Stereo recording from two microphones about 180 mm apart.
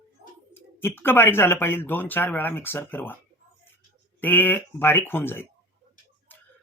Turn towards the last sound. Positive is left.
turn(degrees=10)  # may be behind; listen again after turning